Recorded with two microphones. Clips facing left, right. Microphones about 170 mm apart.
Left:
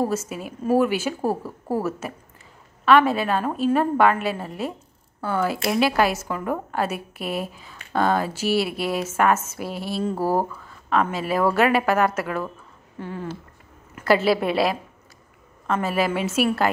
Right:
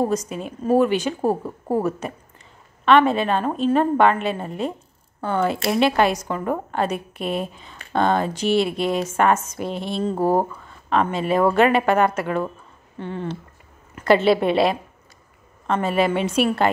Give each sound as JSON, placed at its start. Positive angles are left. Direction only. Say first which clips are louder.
{"t": 0.1, "sound": "a woman's voice", "louder": "right 3 dB", "side_deg": 5}
{"t": 1.2, "sound": "a woman's voice", "louder": "right 3 dB", "side_deg": -20}
{"t": 1.8, "sound": "a woman's voice", "louder": "right 3 dB", "side_deg": 5}
{"t": 10.1, "sound": "speech", "louder": "right 4 dB", "side_deg": -20}
{"t": 10.9, "sound": "speech", "louder": "right 2 dB", "side_deg": 5}